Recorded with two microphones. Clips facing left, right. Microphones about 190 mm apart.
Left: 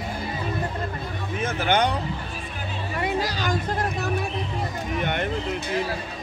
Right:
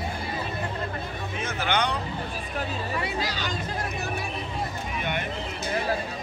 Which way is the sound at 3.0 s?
50° left (ahead or behind).